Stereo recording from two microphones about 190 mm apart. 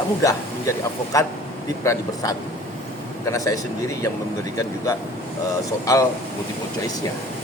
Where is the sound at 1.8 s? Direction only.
15° left (ahead or behind).